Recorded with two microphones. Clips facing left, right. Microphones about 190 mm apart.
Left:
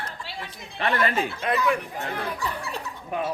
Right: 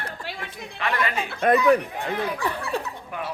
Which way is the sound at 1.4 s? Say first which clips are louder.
Right 9 dB; 50° right (ahead or behind).